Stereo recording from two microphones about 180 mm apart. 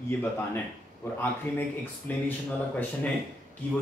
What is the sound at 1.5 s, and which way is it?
Speech, 10° left (ahead or behind).